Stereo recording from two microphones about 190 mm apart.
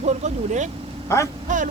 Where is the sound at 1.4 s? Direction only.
40° right (ahead or behind).